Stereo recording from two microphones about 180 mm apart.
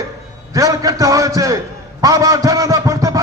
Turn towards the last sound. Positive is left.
turn(degrees=-20)  # may be behind; listen again after turning